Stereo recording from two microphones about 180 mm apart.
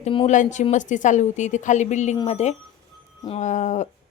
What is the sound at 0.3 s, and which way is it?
A woman's voice, 40° left (ahead or behind).